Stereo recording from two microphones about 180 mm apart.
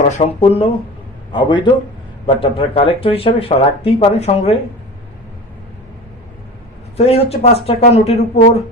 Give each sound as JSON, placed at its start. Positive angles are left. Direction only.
{"t": 0.1, "sound": "a man's voice", "side_deg": 35}
{"t": 6.9, "sound": "speech", "side_deg": 35}